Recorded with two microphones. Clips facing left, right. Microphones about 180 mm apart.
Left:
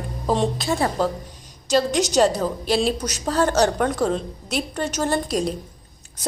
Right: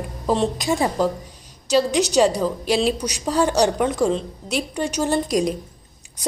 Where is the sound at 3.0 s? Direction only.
10° right (ahead or behind).